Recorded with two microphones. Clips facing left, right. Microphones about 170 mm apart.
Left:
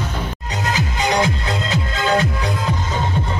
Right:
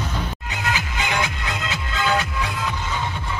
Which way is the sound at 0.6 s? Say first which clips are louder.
Left 5 dB; 35° left (ahead or behind).